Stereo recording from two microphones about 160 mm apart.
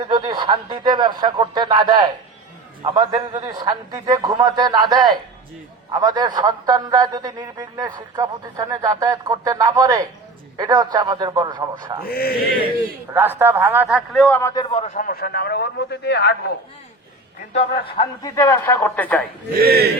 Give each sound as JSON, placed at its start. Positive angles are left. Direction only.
{"t": 0.1, "sound": "a man's voice", "side_deg": -25}
{"t": 12.0, "sound": "a sound", "side_deg": 70}
{"t": 13.1, "sound": "a man's voice", "side_deg": -15}
{"t": 14.4, "sound": "a man's voice", "side_deg": 25}
{"t": 14.8, "sound": "a man's voice", "side_deg": 50}
{"t": 17.5, "sound": "a man's voice", "side_deg": 40}
{"t": 19.5, "sound": "speech", "side_deg": -70}